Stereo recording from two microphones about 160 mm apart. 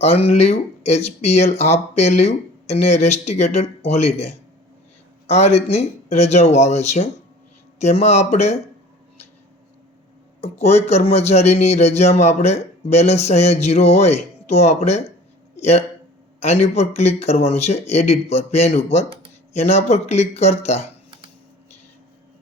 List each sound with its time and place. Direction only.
0.0 s speech: 40° left (ahead or behind)
10.4 s speech: 45° left (ahead or behind)